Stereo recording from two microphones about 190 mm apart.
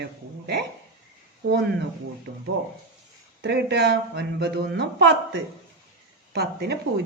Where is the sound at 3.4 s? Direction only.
65° right (ahead or behind).